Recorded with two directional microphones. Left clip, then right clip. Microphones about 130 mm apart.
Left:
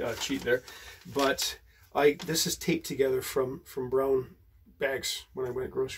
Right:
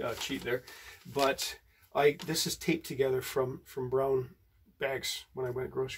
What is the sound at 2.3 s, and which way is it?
Speech, 30° right (ahead or behind).